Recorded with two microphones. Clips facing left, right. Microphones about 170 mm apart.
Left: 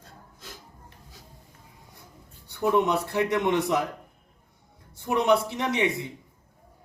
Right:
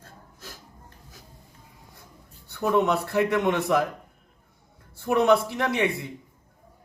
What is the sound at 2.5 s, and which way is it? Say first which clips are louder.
A man's voice: even; 20° left (ahead or behind).